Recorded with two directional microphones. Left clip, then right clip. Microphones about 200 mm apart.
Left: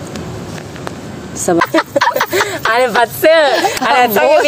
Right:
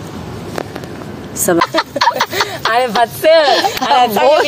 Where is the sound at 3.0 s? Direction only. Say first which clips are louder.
Right 1 dB; 50° left (ahead or behind).